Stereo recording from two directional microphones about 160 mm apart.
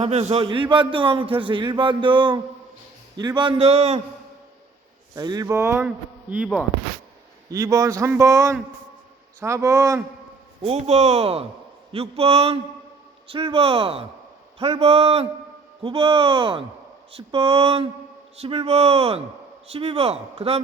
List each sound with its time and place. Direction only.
0.0 s a man's voice: 40° right (ahead or behind)
5.1 s speech: 25° right (ahead or behind)
7.5 s a man's voice: 20° right (ahead or behind)
10.6 s a man's voice: 40° right (ahead or behind)